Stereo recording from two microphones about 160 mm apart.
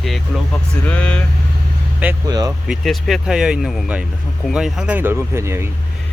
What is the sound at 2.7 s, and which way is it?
Speech, centre (ahead or behind).